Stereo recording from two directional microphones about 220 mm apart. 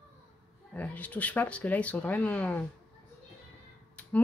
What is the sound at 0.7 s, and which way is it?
Speech, 5° left (ahead or behind).